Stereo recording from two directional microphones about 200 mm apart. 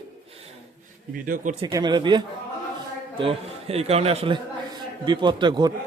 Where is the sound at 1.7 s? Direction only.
20° right (ahead or behind).